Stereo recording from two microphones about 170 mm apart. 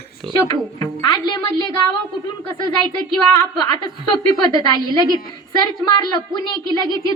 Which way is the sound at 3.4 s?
25° left (ahead or behind).